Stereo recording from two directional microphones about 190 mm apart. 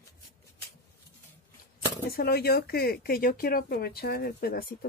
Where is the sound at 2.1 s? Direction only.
55° left (ahead or behind).